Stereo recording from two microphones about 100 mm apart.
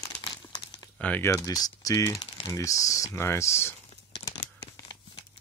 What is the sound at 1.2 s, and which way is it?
Speech, 35° left (ahead or behind).